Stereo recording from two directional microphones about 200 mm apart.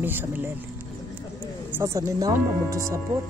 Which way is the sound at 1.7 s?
15° right (ahead or behind).